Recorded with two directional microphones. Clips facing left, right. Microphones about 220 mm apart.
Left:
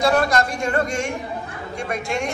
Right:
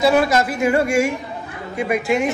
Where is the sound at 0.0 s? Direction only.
5° right (ahead or behind).